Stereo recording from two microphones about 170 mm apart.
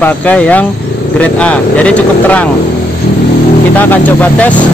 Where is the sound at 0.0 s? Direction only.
10° left (ahead or behind).